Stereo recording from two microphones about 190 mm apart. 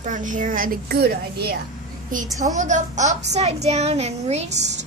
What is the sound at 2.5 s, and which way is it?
A woman's voice, 40° right (ahead or behind).